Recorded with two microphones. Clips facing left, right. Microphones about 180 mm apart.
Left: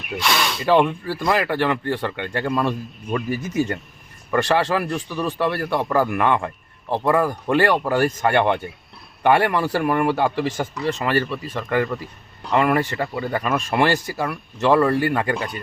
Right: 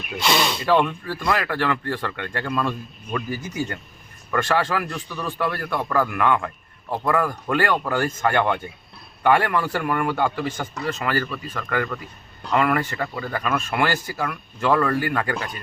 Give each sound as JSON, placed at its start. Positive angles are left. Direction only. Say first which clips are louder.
{"t": 0.3, "sound": "speech", "louder": "right 2 dB", "side_deg": -25}
{"t": 0.6, "sound": "speech", "louder": "left 3 dB", "side_deg": 25}